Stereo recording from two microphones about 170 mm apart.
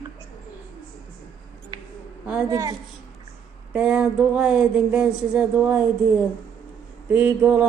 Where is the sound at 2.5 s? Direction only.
20° right (ahead or behind).